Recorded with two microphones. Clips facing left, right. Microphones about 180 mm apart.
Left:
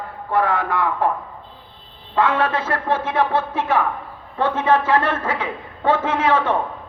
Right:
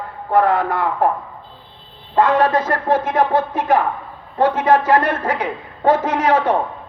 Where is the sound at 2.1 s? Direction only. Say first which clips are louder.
Right 4 dB; 40° right (ahead or behind).